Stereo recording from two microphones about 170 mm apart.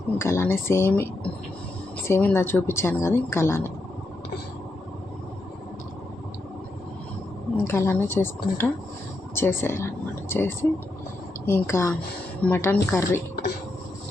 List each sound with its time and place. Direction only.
0.2 s speech: 15° left (ahead or behind)
7.6 s speech: 15° left (ahead or behind)